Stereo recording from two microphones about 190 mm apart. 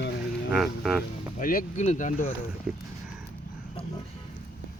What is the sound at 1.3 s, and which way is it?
Speech, 45° left (ahead or behind).